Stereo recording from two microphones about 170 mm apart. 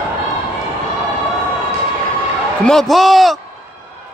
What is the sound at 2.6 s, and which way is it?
Speech, 5° left (ahead or behind).